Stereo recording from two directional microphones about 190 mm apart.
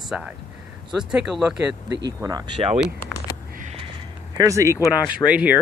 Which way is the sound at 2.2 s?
20° right (ahead or behind).